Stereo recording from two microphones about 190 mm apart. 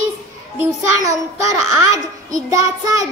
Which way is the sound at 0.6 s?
15° right (ahead or behind).